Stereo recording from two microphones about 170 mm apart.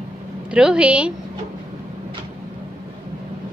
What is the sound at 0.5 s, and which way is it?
Speech, 5° right (ahead or behind).